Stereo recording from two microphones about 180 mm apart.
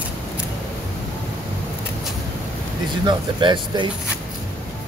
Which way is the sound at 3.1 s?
25° right (ahead or behind).